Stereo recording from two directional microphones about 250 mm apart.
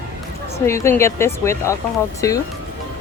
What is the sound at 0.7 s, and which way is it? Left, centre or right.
Speech, centre.